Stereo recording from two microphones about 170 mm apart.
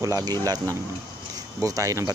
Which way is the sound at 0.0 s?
20° right (ahead or behind).